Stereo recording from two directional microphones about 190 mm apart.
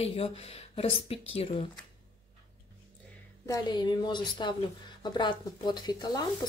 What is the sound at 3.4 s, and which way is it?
Speech, 20° left (ahead or behind).